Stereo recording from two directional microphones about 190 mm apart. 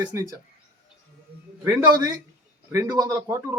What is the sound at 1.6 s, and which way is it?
Speech, 15° right (ahead or behind).